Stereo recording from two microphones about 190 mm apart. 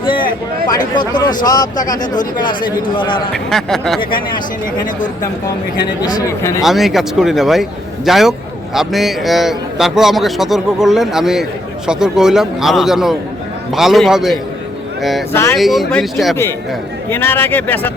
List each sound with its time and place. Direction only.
0.0 s speech: 25° left (ahead or behind)
3.3 s speech: centre (ahead or behind)
5.7 s speech: 20° left (ahead or behind)
6.6 s speech: centre (ahead or behind)
15.3 s speech: 10° left (ahead or behind)
15.5 s speech: centre (ahead or behind)
16.3 s speech: 15° left (ahead or behind)